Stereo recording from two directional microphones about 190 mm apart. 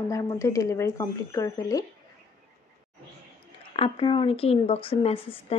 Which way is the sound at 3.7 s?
30° left (ahead or behind).